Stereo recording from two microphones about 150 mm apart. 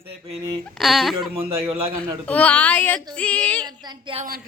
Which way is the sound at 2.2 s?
10° left (ahead or behind).